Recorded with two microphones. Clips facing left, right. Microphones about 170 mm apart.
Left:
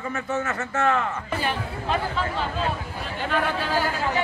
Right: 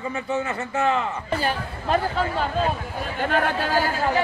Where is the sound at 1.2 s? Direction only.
40° right (ahead or behind).